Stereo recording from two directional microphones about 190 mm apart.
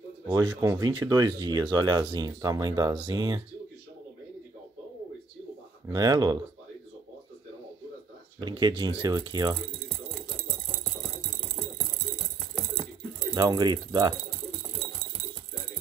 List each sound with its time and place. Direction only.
0.3 s speech: 15° right (ahead or behind)
5.9 s speech: 20° right (ahead or behind)
8.4 s speech: 20° right (ahead or behind)
13.3 s speech: 20° right (ahead or behind)